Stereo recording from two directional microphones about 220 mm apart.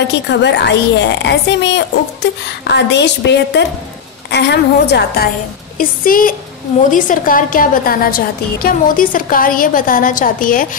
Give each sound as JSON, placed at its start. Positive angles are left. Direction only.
{"t": 0.3, "sound": "a woman's voice", "side_deg": 50}